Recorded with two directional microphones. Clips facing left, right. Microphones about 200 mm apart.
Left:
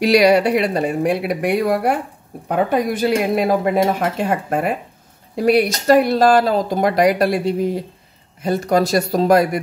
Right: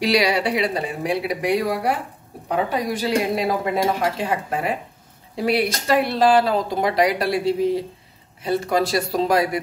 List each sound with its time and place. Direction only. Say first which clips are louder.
0.0 s speech: left 7 dB; 50° left (ahead or behind)